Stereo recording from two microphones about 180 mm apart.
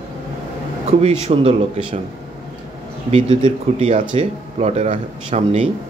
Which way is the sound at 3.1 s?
35° right (ahead or behind).